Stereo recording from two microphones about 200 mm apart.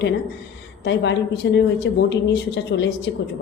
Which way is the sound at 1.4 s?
60° left (ahead or behind).